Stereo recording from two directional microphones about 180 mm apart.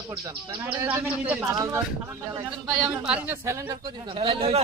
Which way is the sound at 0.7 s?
10° right (ahead or behind).